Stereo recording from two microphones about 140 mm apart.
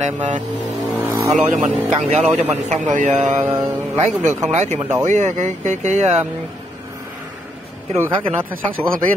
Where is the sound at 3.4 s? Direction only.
15° right (ahead or behind).